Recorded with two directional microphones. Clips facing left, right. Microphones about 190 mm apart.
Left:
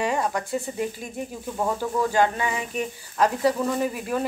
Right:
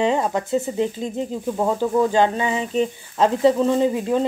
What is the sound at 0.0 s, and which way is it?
Speech, 25° right (ahead or behind).